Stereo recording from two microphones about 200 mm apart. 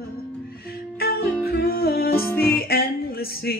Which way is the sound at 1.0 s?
50° left (ahead or behind).